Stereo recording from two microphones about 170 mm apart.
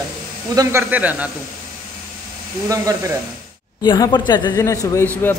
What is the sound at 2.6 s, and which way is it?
Speech, 20° right (ahead or behind).